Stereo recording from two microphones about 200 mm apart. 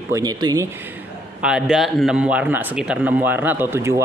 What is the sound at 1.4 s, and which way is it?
Speech, 5° right (ahead or behind).